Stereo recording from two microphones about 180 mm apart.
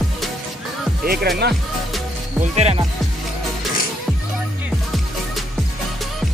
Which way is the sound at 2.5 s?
35° right (ahead or behind).